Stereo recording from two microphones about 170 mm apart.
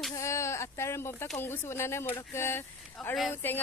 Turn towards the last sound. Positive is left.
turn(degrees=10)  # may be behind; listen again after turning